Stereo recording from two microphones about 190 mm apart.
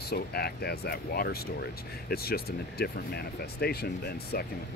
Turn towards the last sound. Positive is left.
turn(degrees=55)  # may be behind; listen again after turning